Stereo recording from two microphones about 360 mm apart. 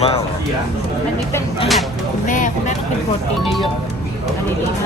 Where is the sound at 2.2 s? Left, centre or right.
Left.